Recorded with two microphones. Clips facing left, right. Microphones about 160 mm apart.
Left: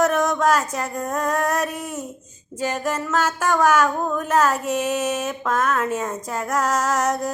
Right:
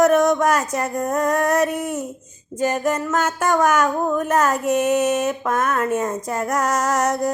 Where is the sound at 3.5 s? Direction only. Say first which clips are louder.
Even; 10° right (ahead or behind).